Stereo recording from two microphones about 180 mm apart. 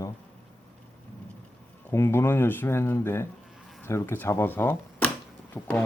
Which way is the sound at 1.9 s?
15° left (ahead or behind).